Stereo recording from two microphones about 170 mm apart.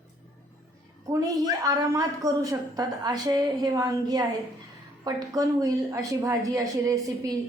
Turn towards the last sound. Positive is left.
turn(degrees=-20)  # may be behind; listen again after turning